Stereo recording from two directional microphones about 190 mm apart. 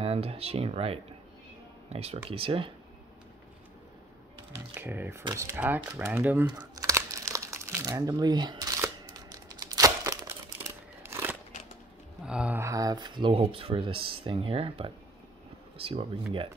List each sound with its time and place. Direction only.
0.0 s speech: 30° right (ahead or behind)
4.7 s speech: 10° right (ahead or behind)
6.6 s crumpling: 20° right (ahead or behind)
11.0 s crunch: 15° right (ahead or behind)
12.3 s speech: 5° right (ahead or behind); by 16.1 s 30° right (ahead or behind)